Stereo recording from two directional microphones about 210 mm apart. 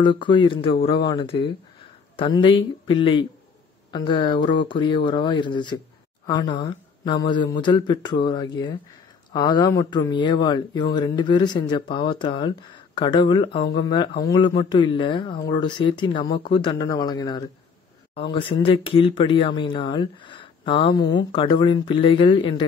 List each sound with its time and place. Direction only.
0.0 s speech: 25° left (ahead or behind)